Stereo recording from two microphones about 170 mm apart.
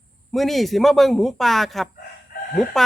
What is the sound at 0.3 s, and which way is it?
A man's voice, centre (ahead or behind).